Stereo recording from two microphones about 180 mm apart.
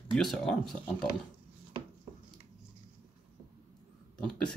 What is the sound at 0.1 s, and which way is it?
Speech, centre (ahead or behind).